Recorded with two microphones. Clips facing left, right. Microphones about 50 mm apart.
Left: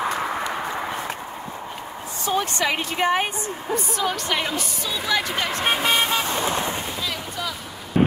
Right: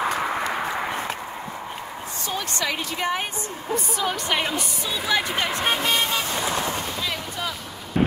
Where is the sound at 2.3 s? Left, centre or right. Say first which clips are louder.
Left 5 dB; left.